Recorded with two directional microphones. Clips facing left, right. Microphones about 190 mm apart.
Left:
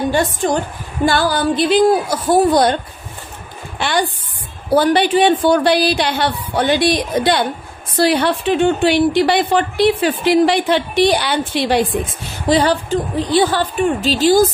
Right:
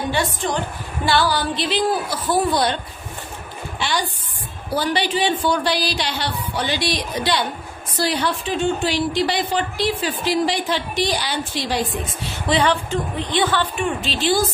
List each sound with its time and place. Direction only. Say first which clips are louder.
0.1 s a woman's voice: left 6 dB; 45° left (ahead or behind)
4.7 s a woman's voice: left 8 dB; 55° left (ahead or behind)
12.4 s speech: left 5 dB; 40° left (ahead or behind)